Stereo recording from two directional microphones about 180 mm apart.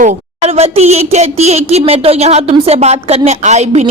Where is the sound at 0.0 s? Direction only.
40° right (ahead or behind).